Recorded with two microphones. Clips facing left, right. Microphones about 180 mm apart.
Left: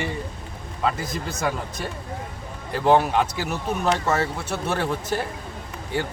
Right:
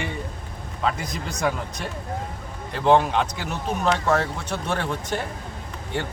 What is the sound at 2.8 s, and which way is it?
Speech, 5° left (ahead or behind).